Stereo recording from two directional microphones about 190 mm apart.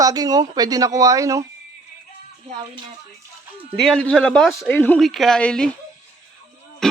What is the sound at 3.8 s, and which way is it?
Speech, centre (ahead or behind).